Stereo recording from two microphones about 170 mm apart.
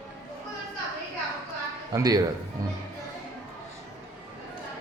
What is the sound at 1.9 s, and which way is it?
Speech, 20° right (ahead or behind).